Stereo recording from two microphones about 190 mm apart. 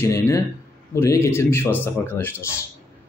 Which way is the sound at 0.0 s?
15° left (ahead or behind).